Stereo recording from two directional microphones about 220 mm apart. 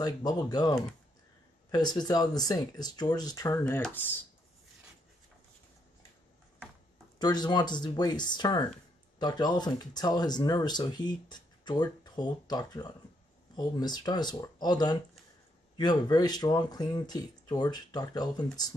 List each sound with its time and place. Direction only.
0.0 s speech: 15° left (ahead or behind)
7.2 s speech: 20° left (ahead or behind)